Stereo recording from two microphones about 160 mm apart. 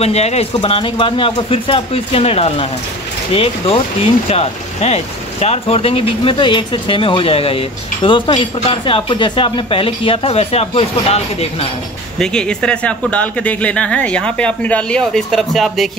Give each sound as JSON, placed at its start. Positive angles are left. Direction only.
{"t": 0.0, "sound": "speech", "side_deg": 40}
{"t": 12.2, "sound": "speech", "side_deg": 5}